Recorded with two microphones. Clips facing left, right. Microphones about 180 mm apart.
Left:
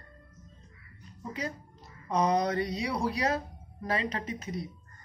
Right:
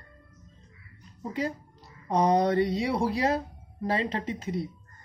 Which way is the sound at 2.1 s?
35° right (ahead or behind).